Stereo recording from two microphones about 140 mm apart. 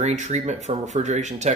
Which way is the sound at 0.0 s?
55° right (ahead or behind).